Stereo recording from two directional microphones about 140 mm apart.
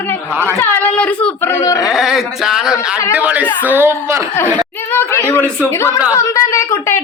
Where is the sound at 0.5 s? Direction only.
15° left (ahead or behind).